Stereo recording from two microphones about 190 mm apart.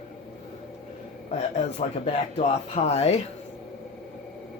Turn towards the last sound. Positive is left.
turn(degrees=35)  # may be behind; listen again after turning